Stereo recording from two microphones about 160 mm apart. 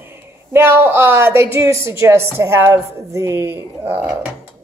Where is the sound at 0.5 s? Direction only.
15° right (ahead or behind).